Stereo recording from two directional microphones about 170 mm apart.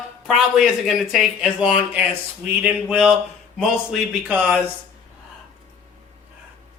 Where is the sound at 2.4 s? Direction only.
5° right (ahead or behind).